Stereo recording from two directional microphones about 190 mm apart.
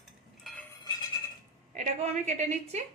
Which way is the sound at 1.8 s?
35° right (ahead or behind).